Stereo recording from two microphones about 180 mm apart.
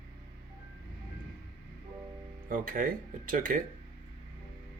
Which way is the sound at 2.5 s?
50° right (ahead or behind).